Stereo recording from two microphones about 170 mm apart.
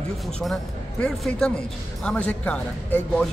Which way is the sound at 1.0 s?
5° left (ahead or behind).